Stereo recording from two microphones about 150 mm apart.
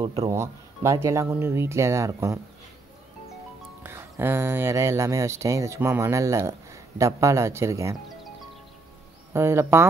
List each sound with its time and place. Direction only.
0.0 s speech: 40° right (ahead or behind)
0.3 s speech: 20° right (ahead or behind)
3.8 s speech: 15° right (ahead or behind)
9.3 s speech: 15° right (ahead or behind)